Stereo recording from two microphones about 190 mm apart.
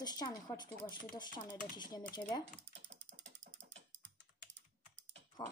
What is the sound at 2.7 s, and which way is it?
Dog, 70° right (ahead or behind).